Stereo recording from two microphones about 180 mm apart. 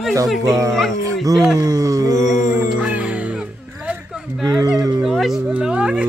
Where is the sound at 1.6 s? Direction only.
20° right (ahead or behind).